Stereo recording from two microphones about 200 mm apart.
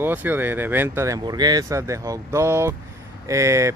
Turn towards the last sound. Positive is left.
turn(degrees=-15)  # may be behind; listen again after turning